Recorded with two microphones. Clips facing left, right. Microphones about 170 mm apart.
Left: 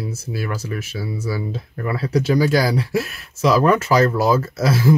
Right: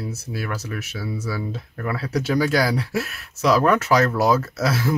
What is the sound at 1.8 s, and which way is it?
Speech, 5° left (ahead or behind).